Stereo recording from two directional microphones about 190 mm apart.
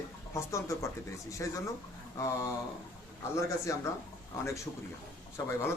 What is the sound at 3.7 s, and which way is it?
Speech, 15° left (ahead or behind).